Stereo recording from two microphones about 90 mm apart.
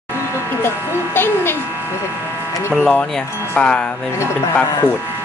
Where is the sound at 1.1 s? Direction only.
25° left (ahead or behind).